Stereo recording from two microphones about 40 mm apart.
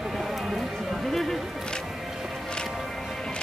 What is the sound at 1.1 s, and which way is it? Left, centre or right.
Music, centre.